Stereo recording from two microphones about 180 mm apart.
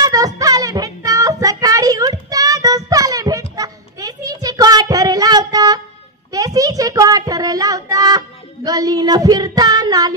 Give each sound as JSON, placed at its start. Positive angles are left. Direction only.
{"t": 0.0, "sound": "child singing", "side_deg": -20}